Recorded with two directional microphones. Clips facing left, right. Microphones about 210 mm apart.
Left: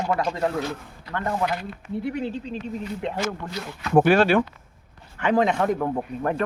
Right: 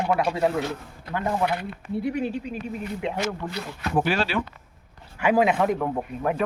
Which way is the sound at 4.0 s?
55° left (ahead or behind).